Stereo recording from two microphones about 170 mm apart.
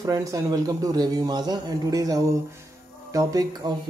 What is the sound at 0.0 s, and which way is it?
A man's voice, 20° right (ahead or behind).